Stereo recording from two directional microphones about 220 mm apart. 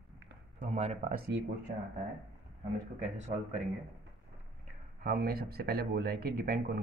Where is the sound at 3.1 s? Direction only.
35° right (ahead or behind).